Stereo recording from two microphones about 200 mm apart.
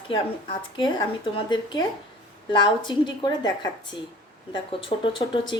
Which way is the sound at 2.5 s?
25° left (ahead or behind).